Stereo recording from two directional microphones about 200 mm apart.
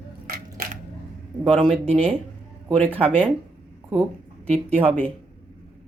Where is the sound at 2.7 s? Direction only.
5° left (ahead or behind).